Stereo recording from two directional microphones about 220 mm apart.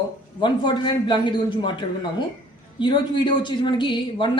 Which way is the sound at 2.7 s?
20° left (ahead or behind).